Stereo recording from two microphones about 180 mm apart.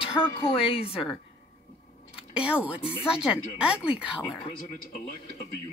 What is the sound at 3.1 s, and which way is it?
Speech, 5° right (ahead or behind).